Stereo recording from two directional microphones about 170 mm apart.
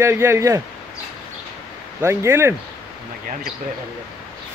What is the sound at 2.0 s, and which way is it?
Speech, 15° right (ahead or behind).